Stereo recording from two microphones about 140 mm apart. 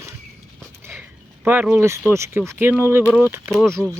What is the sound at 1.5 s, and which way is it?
Speech, 15° right (ahead or behind).